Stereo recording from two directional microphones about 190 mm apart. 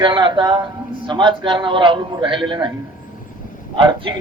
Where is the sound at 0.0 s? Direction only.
25° right (ahead or behind).